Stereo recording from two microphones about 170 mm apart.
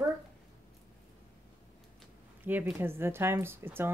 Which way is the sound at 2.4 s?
10° right (ahead or behind).